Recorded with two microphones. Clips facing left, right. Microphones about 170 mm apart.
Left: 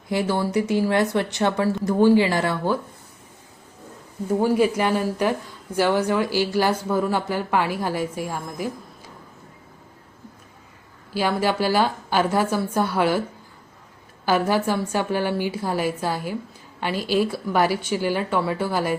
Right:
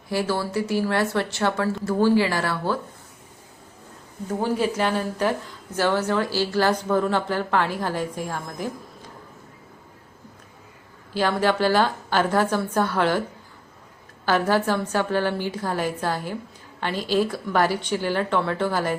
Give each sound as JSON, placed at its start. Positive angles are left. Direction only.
{"t": 0.1, "sound": "speech", "side_deg": 20}
{"t": 4.4, "sound": "speech", "side_deg": 10}
{"t": 11.1, "sound": "speech", "side_deg": 10}
{"t": 14.3, "sound": "speech", "side_deg": 10}